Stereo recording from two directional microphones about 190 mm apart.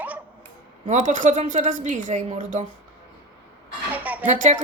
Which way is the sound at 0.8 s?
40° right (ahead or behind).